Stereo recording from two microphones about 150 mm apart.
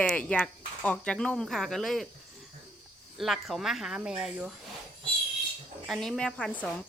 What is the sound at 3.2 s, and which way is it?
Speech, centre (ahead or behind).